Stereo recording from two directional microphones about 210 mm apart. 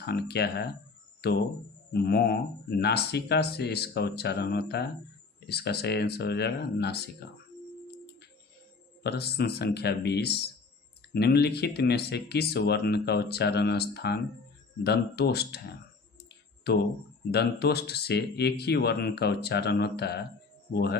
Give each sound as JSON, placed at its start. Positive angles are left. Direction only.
{"t": 0.0, "sound": "speech", "side_deg": 50}
{"t": 9.0, "sound": "speech", "side_deg": 50}
{"t": 16.7, "sound": "speech", "side_deg": 50}